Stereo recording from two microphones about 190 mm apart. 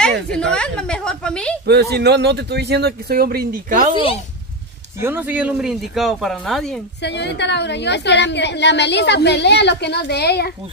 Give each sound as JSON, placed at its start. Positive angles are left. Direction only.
{"t": 0.0, "sound": "a sound", "side_deg": 5}
{"t": 1.7, "sound": "speech", "side_deg": -60}
{"t": 5.0, "sound": "speech", "side_deg": -10}
{"t": 7.0, "sound": "a woman's voice", "side_deg": 65}